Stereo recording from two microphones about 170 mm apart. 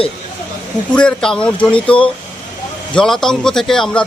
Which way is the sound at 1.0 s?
5° left (ahead or behind).